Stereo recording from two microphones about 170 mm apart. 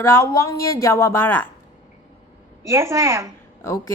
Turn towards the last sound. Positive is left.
turn(degrees=15)  # may be behind; listen again after turning